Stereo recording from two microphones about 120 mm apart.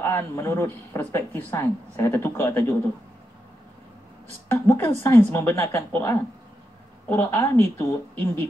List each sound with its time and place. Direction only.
0.0 s speech: 20° left (ahead or behind)
4.5 s speech: 20° left (ahead or behind)